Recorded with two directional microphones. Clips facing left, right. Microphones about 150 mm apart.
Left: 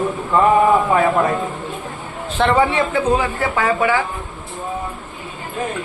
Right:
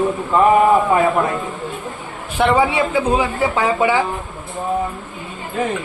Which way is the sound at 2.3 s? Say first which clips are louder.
Even; 10° right (ahead or behind).